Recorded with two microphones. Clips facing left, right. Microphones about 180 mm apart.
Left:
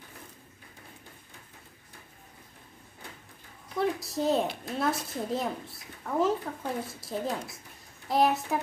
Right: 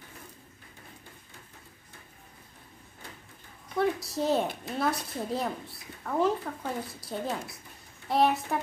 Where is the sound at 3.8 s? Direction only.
Centre (ahead or behind).